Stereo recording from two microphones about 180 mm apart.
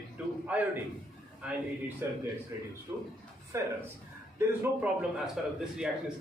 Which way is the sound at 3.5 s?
15° right (ahead or behind).